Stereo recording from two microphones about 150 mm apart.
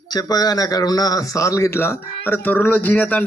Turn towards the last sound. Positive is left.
turn(degrees=10)  # may be behind; listen again after turning